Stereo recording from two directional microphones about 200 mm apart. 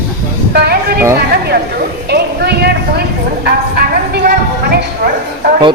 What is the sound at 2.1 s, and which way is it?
Speech, 55° right (ahead or behind).